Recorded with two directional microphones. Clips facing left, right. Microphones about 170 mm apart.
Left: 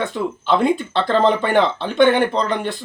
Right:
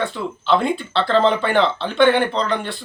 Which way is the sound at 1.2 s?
45° left (ahead or behind).